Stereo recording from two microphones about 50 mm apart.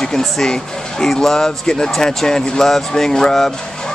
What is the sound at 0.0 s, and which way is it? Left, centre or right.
Speech, centre.